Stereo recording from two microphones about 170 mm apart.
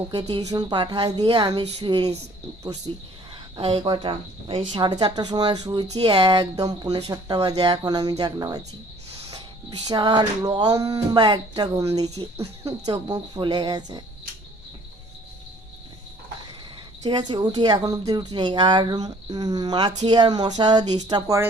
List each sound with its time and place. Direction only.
0.1 s speech: 25° right (ahead or behind)
17.0 s speech: 25° right (ahead or behind)